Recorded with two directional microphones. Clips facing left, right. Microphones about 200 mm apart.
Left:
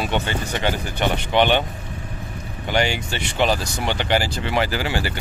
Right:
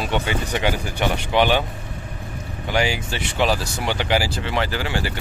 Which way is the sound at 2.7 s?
5° right (ahead or behind).